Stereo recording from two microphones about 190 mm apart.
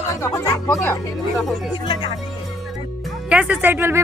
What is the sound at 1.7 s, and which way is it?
Speech, 25° left (ahead or behind).